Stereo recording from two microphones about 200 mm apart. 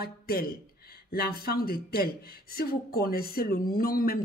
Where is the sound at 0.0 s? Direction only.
50° left (ahead or behind).